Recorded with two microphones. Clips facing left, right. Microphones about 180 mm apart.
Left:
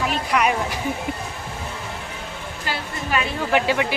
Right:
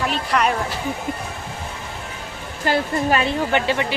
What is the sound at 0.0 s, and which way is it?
Speech, 10° left (ahead or behind).